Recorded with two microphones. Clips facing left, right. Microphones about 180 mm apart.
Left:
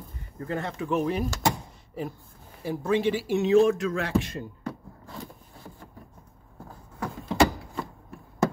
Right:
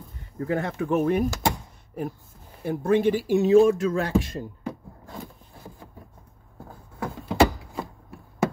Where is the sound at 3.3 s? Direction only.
40° right (ahead or behind).